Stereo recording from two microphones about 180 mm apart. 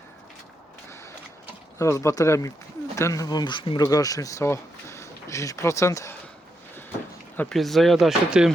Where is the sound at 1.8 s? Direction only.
15° left (ahead or behind).